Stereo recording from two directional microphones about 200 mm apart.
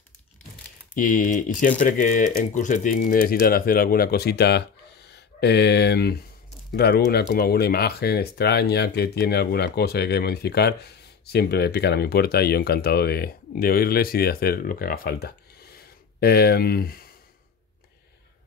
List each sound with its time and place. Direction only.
0.9 s speech: 40° left (ahead or behind)